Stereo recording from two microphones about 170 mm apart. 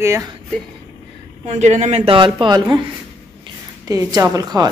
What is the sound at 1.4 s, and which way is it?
A woman's voice, 40° right (ahead or behind).